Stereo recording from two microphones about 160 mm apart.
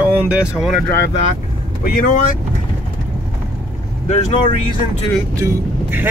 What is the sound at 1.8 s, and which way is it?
Speech, 60° left (ahead or behind).